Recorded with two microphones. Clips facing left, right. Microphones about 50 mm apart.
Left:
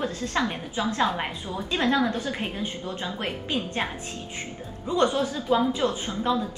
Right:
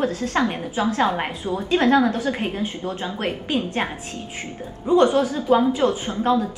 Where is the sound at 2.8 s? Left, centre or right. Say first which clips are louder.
Right 4 dB; right.